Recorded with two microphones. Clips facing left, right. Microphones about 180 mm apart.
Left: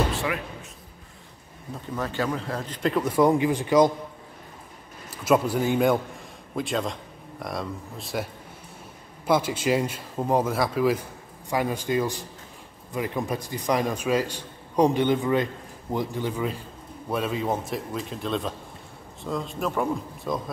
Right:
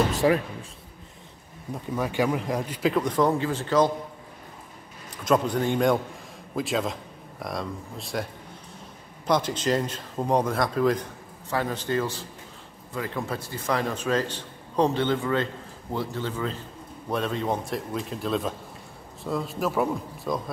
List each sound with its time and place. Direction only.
0.1 s speech: 35° right (ahead or behind)
2.0 s a man's voice: 15° right (ahead or behind)
2.8 s a man's voice: 5° left (ahead or behind)
5.1 s a man's voice: 5° left (ahead or behind)